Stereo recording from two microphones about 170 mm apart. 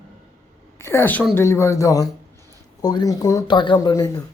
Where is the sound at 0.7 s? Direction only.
15° left (ahead or behind).